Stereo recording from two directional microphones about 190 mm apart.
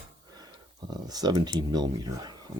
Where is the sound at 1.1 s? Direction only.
20° right (ahead or behind).